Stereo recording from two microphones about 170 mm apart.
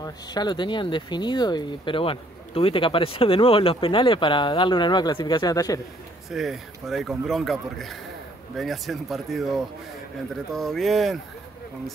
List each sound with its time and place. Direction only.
0.0 s speech: 25° left (ahead or behind)
6.3 s a man's voice: centre (ahead or behind)